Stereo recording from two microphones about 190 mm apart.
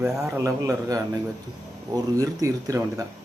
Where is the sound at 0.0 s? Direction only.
5° right (ahead or behind).